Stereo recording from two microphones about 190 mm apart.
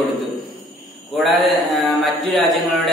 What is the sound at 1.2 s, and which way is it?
A man's voice, centre (ahead or behind).